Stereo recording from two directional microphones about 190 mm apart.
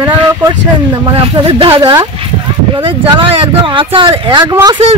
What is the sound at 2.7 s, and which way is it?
Speech, 30° right (ahead or behind).